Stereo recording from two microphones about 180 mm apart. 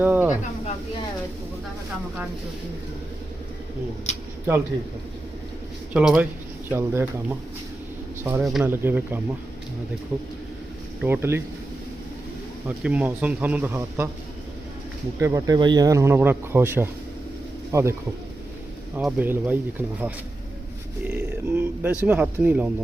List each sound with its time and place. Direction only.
0.0 s snake: 10° right (ahead or behind)
5.9 s speech: 5° right (ahead or behind)
12.6 s speech: 10° right (ahead or behind)
15.2 s speech: 20° right (ahead or behind)
18.9 s speech: 10° right (ahead or behind)
21.0 s speech: 10° right (ahead or behind)